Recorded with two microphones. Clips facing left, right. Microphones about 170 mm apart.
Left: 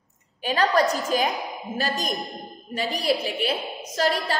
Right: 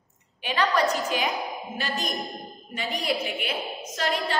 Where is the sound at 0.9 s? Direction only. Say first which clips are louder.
Left 3 dB; 40° left (ahead or behind).